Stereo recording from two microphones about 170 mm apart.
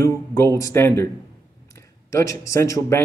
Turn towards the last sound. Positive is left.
turn(degrees=15)  # may be behind; listen again after turning